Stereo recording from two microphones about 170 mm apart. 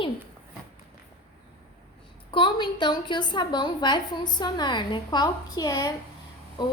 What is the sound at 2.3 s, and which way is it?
A woman's voice, 30° left (ahead or behind).